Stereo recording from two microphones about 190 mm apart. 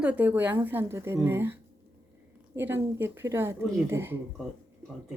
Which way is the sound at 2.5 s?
10° right (ahead or behind).